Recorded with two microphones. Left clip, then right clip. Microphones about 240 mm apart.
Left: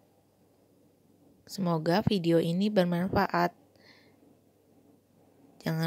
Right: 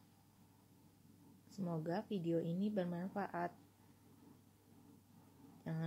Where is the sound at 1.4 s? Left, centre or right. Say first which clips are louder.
Left 15 dB; left.